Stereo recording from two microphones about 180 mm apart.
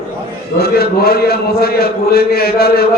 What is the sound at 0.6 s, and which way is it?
A man's voice, 60° left (ahead or behind).